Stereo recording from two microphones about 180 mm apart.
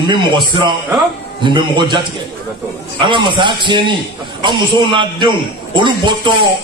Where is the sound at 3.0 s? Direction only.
25° right (ahead or behind).